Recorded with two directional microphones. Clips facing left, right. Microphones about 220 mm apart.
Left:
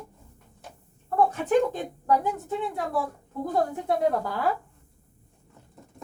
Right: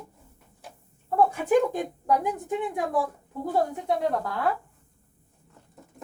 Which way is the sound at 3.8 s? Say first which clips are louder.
Left 2 dB; centre (ahead or behind).